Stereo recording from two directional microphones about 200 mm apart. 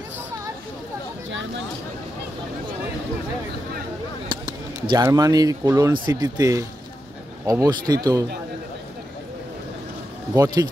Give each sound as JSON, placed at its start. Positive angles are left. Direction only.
{"t": 4.3, "sound": "speech", "side_deg": -25}
{"t": 10.3, "sound": "speech", "side_deg": -20}